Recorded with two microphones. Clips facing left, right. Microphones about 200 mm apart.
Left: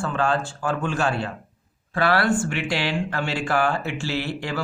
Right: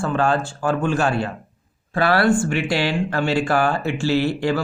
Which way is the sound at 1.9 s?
30° right (ahead or behind).